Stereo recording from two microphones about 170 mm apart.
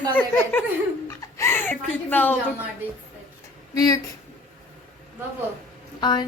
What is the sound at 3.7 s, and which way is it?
Speech, 20° left (ahead or behind).